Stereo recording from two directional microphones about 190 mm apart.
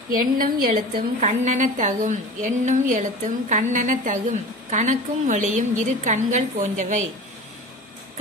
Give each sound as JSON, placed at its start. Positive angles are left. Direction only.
{"t": 0.1, "sound": "a woman's voice", "side_deg": -45}